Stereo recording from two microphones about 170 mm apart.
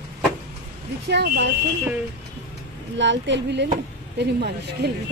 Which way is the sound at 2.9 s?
90° right.